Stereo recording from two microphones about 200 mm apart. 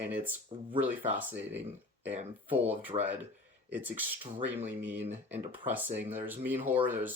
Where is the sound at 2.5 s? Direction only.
10° right (ahead or behind).